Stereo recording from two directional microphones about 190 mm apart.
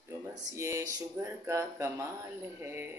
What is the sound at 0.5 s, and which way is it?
Speech, 15° right (ahead or behind).